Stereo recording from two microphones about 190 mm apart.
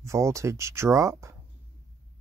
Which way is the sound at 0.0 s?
15° right (ahead or behind).